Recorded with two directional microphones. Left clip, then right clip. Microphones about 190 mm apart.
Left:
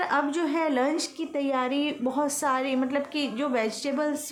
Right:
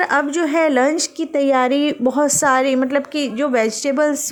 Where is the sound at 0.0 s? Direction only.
35° right (ahead or behind).